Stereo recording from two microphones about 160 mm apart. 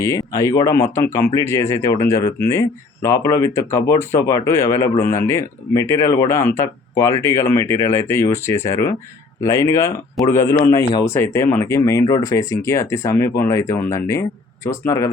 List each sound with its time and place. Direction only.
0.0 s speech: 20° left (ahead or behind)